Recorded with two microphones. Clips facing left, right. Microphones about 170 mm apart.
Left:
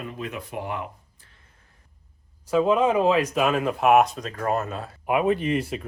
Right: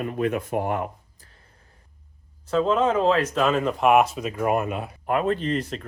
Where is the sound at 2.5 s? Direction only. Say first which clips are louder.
Left 1 dB; 10° left (ahead or behind); by 4.9 s 15° right (ahead or behind).